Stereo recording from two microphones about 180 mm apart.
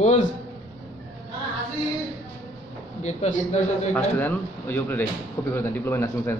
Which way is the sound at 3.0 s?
40° left (ahead or behind).